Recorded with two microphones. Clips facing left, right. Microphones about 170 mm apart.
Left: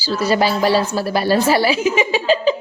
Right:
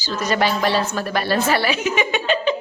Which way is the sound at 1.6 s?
30° left (ahead or behind).